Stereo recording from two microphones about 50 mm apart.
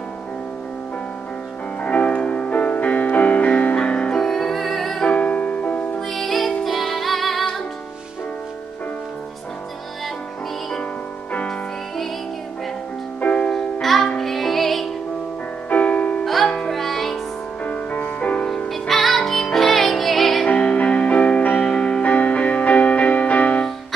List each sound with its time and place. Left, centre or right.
1.8 s music: left; by 5.0 s centre
5.0 s music: left
5.9 s music: centre
13.3 s music: centre
15.7 s music: left
16.4 s music: centre
17.6 s music: left
18.7 s music: centre
20.4 s music: left
21.6 s music: centre
22.0 s music: left